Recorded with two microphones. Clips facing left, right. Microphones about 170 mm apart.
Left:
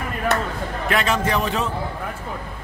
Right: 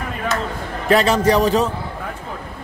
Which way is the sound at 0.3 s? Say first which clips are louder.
Left 1 dB; 65° left (ahead or behind).